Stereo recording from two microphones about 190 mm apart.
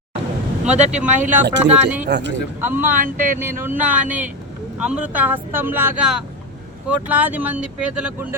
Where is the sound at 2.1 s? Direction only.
65° right (ahead or behind).